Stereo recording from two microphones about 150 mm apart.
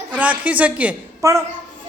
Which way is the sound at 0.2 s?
10° right (ahead or behind).